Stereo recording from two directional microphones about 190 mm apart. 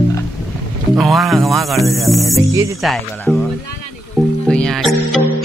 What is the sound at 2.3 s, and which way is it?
Speech, 15° right (ahead or behind).